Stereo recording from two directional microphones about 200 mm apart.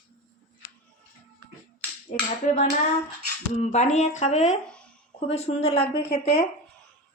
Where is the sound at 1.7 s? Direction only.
35° left (ahead or behind).